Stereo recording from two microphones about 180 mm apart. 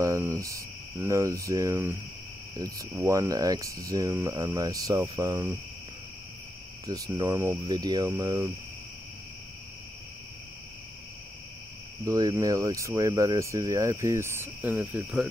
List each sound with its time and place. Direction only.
0.0 s cricket: 15° right (ahead or behind)
0.4 s speech: 15° right (ahead or behind)
6.9 s speech: 20° right (ahead or behind)
12.0 s speech: 20° right (ahead or behind); by 15.2 s 5° right (ahead or behind)